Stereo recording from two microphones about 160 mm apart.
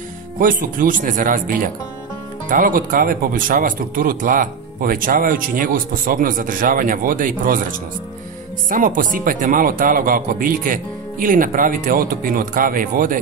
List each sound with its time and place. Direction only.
0.4 s speech: 55° right (ahead or behind)
8.6 s speech: 60° right (ahead or behind)